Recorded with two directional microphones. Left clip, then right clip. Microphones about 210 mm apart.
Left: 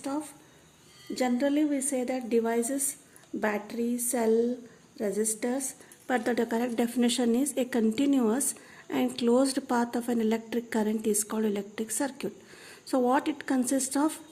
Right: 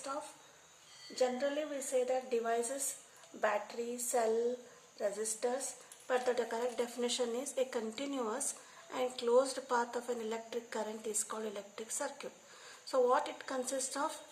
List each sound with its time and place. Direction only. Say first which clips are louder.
1.1 s speech: left 6 dB; 50° left (ahead or behind)